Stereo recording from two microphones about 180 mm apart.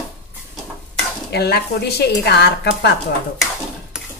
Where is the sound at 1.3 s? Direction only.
65° left (ahead or behind).